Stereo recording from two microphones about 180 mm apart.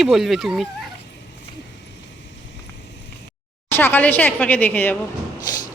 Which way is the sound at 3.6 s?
10° left (ahead or behind).